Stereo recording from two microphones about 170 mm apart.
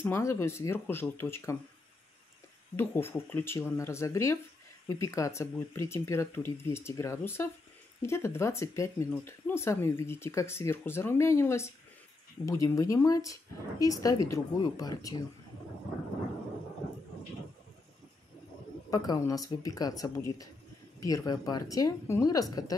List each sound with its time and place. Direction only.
0.0 s speech: 15° left (ahead or behind)
2.7 s speech: 15° left (ahead or behind)
18.9 s speech: 25° left (ahead or behind)